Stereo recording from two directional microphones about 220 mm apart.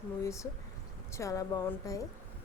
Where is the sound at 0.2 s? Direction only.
15° left (ahead or behind).